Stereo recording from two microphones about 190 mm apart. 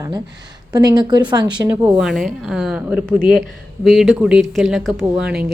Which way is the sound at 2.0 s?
Centre (ahead or behind).